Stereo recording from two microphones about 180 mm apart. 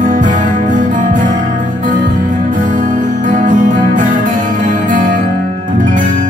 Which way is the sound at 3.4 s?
45° right (ahead or behind).